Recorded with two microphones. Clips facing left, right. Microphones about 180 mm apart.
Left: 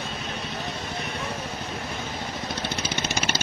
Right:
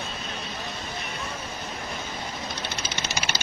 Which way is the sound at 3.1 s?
50° left (ahead or behind).